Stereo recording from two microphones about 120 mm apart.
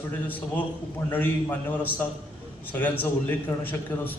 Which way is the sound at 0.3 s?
15° left (ahead or behind).